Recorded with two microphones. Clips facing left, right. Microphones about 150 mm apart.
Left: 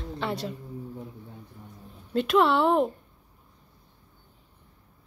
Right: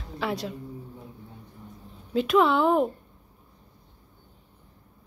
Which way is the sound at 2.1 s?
Centre (ahead or behind).